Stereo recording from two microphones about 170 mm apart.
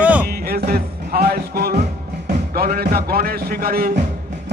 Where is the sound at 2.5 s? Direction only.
65° right (ahead or behind).